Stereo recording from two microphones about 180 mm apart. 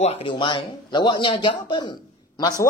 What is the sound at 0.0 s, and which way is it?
Speech, 35° left (ahead or behind).